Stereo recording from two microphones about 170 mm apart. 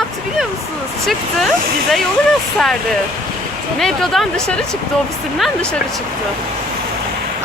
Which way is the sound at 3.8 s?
Centre (ahead or behind).